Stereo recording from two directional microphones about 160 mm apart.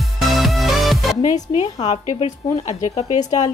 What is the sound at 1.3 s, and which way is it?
Speech, 45° left (ahead or behind).